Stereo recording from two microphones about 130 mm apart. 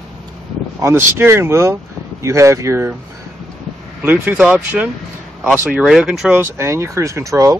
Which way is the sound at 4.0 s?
15° right (ahead or behind).